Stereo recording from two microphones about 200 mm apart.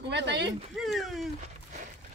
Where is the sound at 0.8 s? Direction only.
Centre (ahead or behind).